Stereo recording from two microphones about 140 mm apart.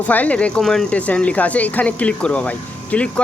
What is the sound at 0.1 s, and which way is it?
Speech, 10° left (ahead or behind).